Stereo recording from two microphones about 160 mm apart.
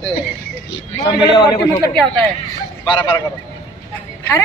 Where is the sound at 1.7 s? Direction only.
10° left (ahead or behind).